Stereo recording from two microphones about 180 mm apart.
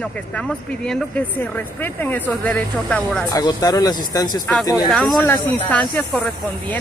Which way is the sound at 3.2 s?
20° left (ahead or behind).